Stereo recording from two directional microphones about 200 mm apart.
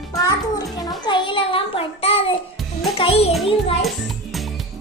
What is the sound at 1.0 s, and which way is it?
Child singing, 25° left (ahead or behind).